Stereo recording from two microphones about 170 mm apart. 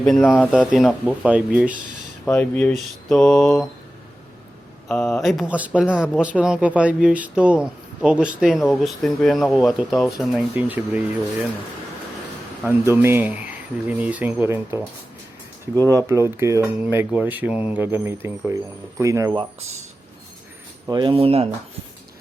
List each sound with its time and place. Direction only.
0.0 s speech: 10° left (ahead or behind)
0.5 s speech: 5° right (ahead or behind)
2.2 s speech: 10° left (ahead or behind)
4.9 s speech: centre (ahead or behind)
10.5 s speech: 10° right (ahead or behind)
12.6 s speech: 15° right (ahead or behind)
15.9 s speech: 20° right (ahead or behind)
20.9 s speech: 30° right (ahead or behind)